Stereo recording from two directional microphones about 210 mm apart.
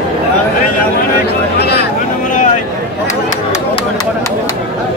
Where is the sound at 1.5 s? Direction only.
50° left (ahead or behind).